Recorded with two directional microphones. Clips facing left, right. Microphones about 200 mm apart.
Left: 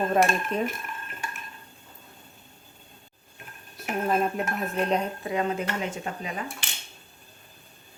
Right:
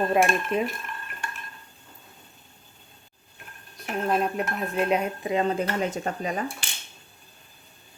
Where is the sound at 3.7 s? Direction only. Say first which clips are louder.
Even; 5° left (ahead or behind).